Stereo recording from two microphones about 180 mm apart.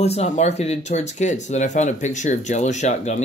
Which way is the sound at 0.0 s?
35° left (ahead or behind).